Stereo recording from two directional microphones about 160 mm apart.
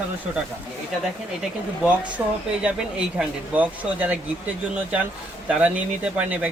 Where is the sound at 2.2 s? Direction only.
15° right (ahead or behind).